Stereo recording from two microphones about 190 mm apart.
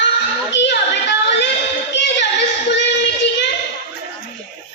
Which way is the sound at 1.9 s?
65° left (ahead or behind).